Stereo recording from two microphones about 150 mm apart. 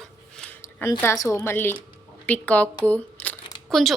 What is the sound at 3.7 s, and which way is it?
Speech, centre (ahead or behind).